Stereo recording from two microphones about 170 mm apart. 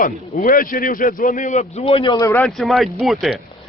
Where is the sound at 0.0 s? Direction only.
55° left (ahead or behind); by 2.4 s 20° left (ahead or behind).